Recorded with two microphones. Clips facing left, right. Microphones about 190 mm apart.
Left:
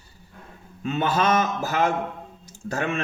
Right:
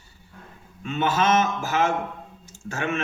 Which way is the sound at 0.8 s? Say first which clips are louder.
Even; 35° left (ahead or behind).